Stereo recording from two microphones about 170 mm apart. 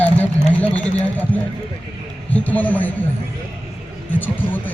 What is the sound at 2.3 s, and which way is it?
Speech, 10° left (ahead or behind).